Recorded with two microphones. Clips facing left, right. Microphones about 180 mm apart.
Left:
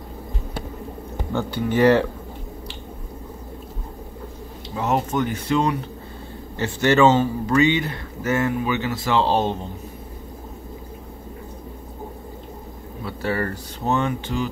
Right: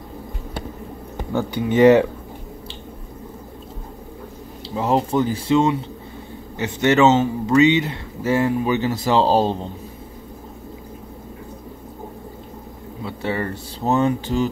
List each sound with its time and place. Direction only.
1.3 s speech: 15° right (ahead or behind)
4.6 s speech: 30° right (ahead or behind)
13.0 s speech: 20° right (ahead or behind)
13.8 s speech: 35° right (ahead or behind)